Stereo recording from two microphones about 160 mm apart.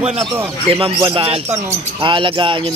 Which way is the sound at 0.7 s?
35° right (ahead or behind).